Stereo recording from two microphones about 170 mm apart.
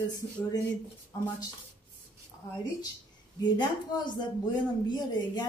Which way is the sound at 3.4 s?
25° left (ahead or behind).